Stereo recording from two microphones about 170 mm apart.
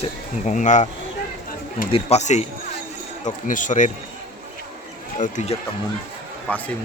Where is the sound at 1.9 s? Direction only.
40° left (ahead or behind).